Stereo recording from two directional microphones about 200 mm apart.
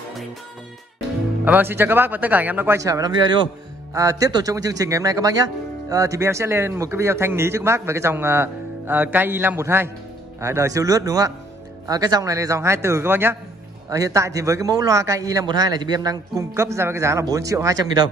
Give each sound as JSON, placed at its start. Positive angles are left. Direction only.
{"t": 1.4, "sound": "speech", "side_deg": -10}